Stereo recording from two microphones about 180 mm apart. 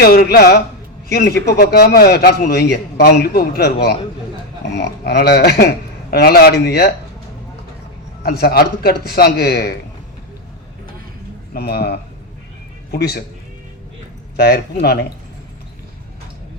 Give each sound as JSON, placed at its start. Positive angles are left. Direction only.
{"t": 0.0, "sound": "a man's voice", "side_deg": 60}
{"t": 8.2, "sound": "a man's voice", "side_deg": 60}
{"t": 11.5, "sound": "a man's voice", "side_deg": 60}
{"t": 14.3, "sound": "a man's voice", "side_deg": 60}